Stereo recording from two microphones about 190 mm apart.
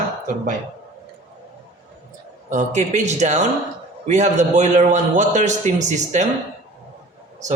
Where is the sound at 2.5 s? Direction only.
40° right (ahead or behind).